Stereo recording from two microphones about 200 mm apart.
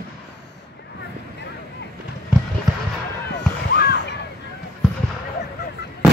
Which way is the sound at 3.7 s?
55° left (ahead or behind).